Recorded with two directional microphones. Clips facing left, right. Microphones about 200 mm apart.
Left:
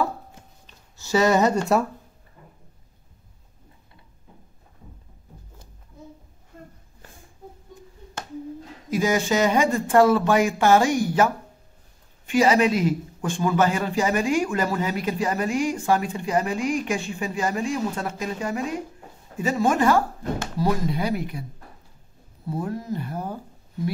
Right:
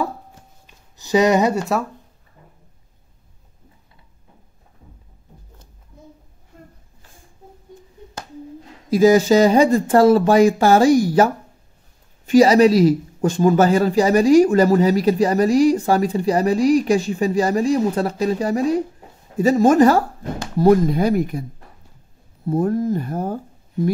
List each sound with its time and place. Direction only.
0.7 s a sound: 15° right (ahead or behind)
8.9 s speech: 35° right (ahead or behind)
12.3 s speech: 35° right (ahead or behind)
22.5 s speech: 50° right (ahead or behind)